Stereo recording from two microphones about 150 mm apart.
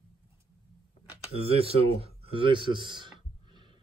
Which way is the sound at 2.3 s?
35° right (ahead or behind).